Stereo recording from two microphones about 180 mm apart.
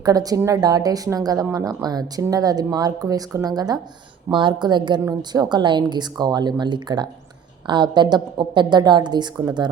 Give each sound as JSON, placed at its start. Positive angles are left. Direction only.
{"t": 0.0, "sound": "a woman's voice", "side_deg": -20}